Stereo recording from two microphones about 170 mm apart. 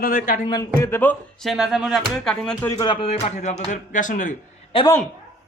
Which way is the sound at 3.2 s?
45° left (ahead or behind).